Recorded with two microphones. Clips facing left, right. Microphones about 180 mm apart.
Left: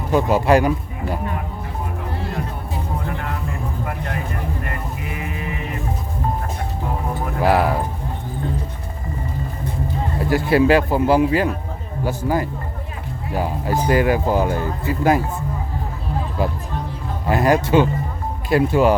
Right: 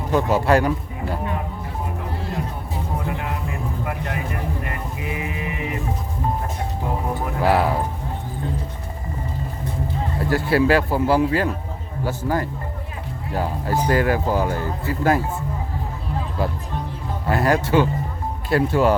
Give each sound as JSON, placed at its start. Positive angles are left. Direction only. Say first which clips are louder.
{"t": 0.1, "sound": "speech", "louder": "left 2 dB", "side_deg": 15}
{"t": 7.4, "sound": "speech", "louder": "left 2 dB", "side_deg": 15}
{"t": 10.2, "sound": "speech", "louder": "left 3 dB", "side_deg": 15}
{"t": 17.2, "sound": "speech", "louder": "left 3 dB", "side_deg": 15}